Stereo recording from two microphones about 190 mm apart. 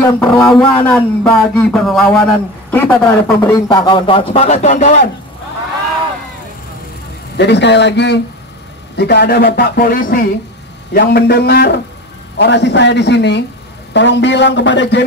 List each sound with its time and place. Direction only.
0.0 s a man's voice: 10° left (ahead or behind); by 5.0 s 40° left (ahead or behind)
7.3 s a man's voice: 65° left (ahead or behind)